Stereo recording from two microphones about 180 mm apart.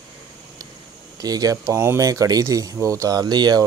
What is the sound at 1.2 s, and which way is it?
Speech, 20° right (ahead or behind).